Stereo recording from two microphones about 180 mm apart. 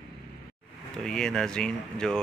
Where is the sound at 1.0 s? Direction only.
5° left (ahead or behind).